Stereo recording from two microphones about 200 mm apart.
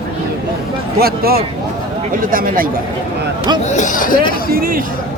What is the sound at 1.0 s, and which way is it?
Speech, 50° right (ahead or behind).